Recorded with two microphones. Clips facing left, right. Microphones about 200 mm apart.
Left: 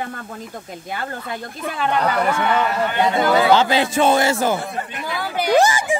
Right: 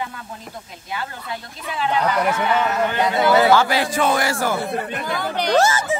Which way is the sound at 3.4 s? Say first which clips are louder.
Left 1 dB; 20° left (ahead or behind).